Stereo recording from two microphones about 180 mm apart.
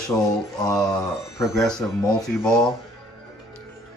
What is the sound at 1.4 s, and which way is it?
Speech, centre (ahead or behind).